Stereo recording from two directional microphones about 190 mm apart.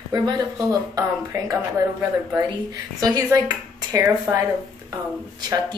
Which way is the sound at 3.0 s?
20° right (ahead or behind).